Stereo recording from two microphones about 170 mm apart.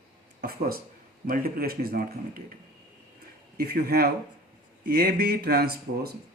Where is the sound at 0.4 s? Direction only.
65° right (ahead or behind).